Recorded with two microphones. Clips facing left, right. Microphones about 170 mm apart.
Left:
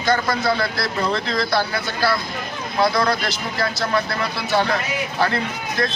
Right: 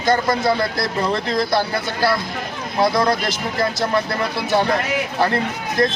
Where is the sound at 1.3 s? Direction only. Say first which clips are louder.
Right 2 dB; 15° right (ahead or behind).